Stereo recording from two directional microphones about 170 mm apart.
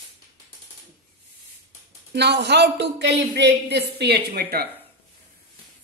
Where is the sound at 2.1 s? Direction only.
85° right; by 4.6 s 65° right (ahead or behind).